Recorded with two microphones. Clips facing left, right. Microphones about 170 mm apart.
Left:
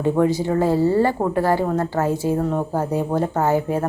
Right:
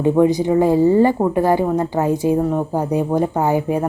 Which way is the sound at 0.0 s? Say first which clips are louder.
Right 4 dB; 15° right (ahead or behind).